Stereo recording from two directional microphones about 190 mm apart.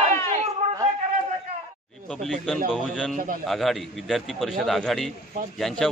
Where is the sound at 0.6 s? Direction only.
35° right (ahead or behind).